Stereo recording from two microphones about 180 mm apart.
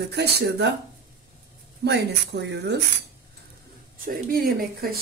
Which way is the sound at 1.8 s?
70° right (ahead or behind).